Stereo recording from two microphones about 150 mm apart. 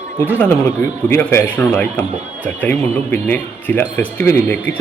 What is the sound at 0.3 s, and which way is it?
Speech, 15° left (ahead or behind).